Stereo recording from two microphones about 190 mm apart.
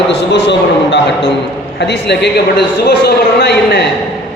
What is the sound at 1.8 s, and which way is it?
A man's voice, 65° left (ahead or behind).